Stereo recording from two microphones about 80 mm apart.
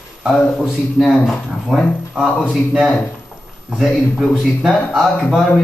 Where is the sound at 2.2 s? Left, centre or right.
Centre.